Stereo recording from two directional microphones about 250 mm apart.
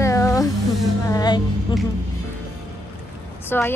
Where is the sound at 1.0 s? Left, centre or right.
Centre.